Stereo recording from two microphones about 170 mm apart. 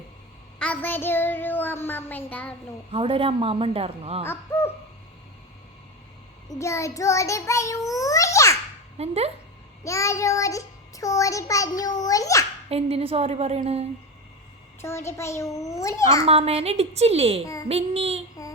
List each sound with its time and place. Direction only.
0.6 s a child's voice: 10° left (ahead or behind)
2.9 s a woman's voice: 30° right (ahead or behind)
4.3 s a child's voice: 15° left (ahead or behind)
6.5 s a child's voice: 15° left (ahead or behind)
7.9 s babbling: 20° left (ahead or behind)
9.0 s a woman's voice: 35° right (ahead or behind)
9.8 s child singing: 15° left (ahead or behind)
12.6 s a woman's voice: 35° right (ahead or behind)
14.8 s a child's voice: 15° left (ahead or behind)
16.2 s a woman's voice: 35° right (ahead or behind)
17.4 s a child's voice: 20° left (ahead or behind)
17.7 s a woman's voice: 35° right (ahead or behind)
18.4 s child singing: 20° left (ahead or behind)